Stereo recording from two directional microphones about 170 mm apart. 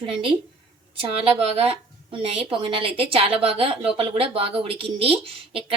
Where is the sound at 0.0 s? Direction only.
30° right (ahead or behind).